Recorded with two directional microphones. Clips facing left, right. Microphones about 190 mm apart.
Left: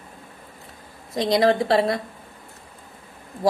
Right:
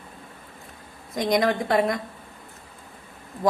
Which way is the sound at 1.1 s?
30° left (ahead or behind).